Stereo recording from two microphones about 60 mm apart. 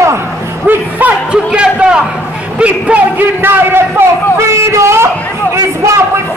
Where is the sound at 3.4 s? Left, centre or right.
Right.